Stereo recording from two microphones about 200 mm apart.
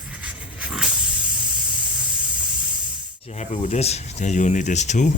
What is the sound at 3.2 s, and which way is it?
Speech, 30° left (ahead or behind).